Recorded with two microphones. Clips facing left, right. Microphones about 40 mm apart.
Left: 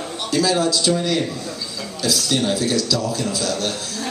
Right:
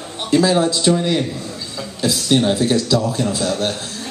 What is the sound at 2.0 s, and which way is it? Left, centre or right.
A man's voice, right.